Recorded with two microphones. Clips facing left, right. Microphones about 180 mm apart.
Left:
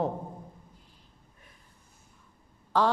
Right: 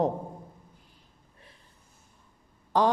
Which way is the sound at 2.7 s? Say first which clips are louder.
Right 2 dB; 15° right (ahead or behind).